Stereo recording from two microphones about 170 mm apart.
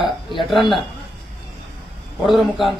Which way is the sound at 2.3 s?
Centre (ahead or behind).